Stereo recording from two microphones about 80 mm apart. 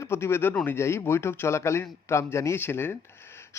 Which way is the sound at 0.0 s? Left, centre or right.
Left.